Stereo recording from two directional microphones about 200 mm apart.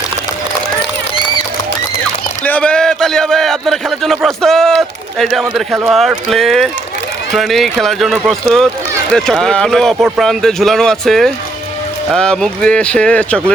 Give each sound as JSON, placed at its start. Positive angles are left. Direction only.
{"t": 2.4, "sound": "a man's voice", "side_deg": 5}